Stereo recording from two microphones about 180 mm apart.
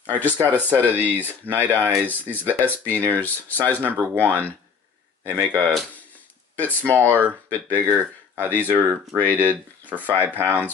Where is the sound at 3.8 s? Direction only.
10° right (ahead or behind).